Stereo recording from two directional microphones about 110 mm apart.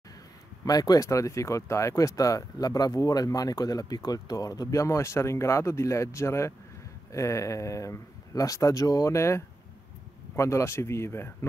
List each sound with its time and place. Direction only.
0.7 s speech: 35° left (ahead or behind)